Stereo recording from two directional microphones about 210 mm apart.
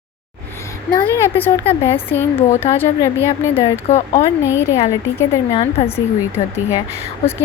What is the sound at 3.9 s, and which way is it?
Speech, 30° left (ahead or behind).